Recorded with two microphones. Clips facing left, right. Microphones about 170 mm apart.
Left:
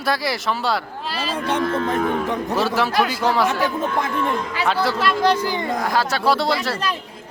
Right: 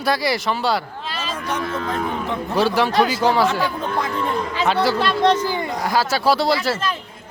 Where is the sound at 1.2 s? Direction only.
30° left (ahead or behind).